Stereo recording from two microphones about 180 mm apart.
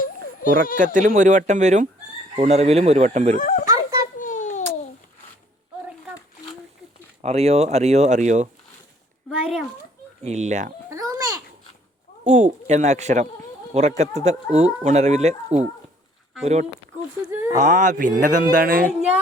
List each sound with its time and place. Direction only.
0.4 s speech: 50° left (ahead or behind)
0.9 s speech: 45° right (ahead or behind)
3.3 s speech: 45° left (ahead or behind)
4.2 s a sound: 45° left (ahead or behind)
7.2 s speech: 35° right (ahead or behind)
9.3 s speech: 5° right (ahead or behind)
10.2 s speech: 40° right (ahead or behind)
10.9 s babbling: 20° right (ahead or behind)
12.2 s speech: 40° right (ahead or behind)
17.2 s speech: 15° right (ahead or behind)
17.6 s speech: 45° right (ahead or behind)